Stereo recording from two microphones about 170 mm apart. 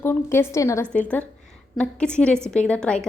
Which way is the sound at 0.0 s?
15° left (ahead or behind).